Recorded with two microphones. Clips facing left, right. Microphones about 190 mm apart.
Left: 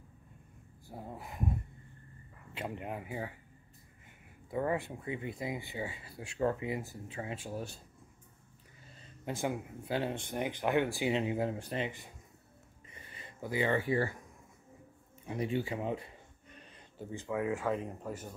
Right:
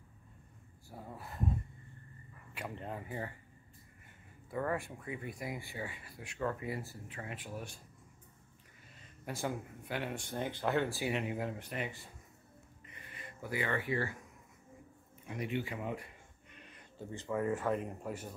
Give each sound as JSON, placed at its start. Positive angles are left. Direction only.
{"t": 0.8, "sound": "speech", "side_deg": 20}
{"t": 2.5, "sound": "speech", "side_deg": 20}
{"t": 4.5, "sound": "speech", "side_deg": 20}
{"t": 9.2, "sound": "speech", "side_deg": 20}
{"t": 13.2, "sound": "speech", "side_deg": 25}
{"t": 15.2, "sound": "speech", "side_deg": 30}
{"t": 17.1, "sound": "speech", "side_deg": 0}